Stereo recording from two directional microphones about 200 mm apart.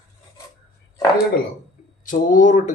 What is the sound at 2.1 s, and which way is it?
Speech, 40° left (ahead or behind).